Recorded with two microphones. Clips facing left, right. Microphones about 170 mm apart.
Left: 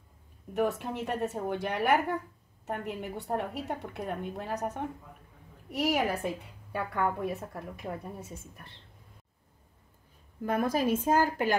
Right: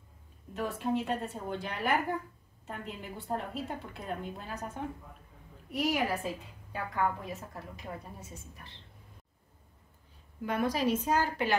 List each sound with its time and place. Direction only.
0.5 s a woman's voice: 65° left (ahead or behind)
10.4 s a woman's voice: 45° left (ahead or behind)